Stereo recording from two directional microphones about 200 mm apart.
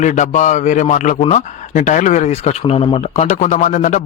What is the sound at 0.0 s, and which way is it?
A man's voice, 40° left (ahead or behind).